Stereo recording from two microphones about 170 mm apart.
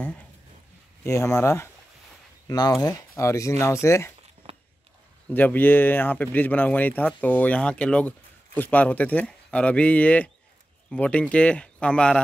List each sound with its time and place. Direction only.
1.0 s speech: 15° left (ahead or behind)
5.3 s speech: 10° left (ahead or behind)